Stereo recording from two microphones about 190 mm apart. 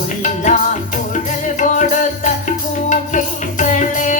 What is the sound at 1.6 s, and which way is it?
Music, 40° left (ahead or behind).